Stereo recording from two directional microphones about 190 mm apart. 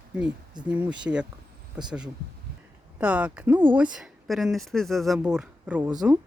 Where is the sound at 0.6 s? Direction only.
5° right (ahead or behind).